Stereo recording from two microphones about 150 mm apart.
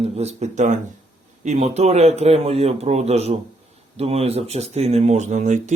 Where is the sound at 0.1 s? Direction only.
45° right (ahead or behind).